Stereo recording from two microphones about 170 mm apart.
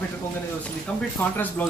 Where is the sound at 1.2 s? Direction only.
10° left (ahead or behind).